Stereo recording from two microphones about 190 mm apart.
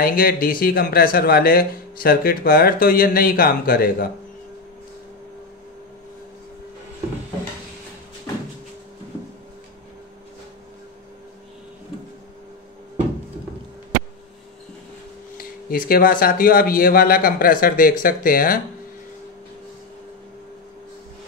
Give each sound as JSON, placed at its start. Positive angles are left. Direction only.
{"t": 0.0, "sound": "speech", "side_deg": 50}
{"t": 15.3, "sound": "speech", "side_deg": 50}